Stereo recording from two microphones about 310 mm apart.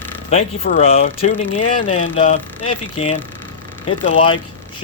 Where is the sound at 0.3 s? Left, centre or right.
Left.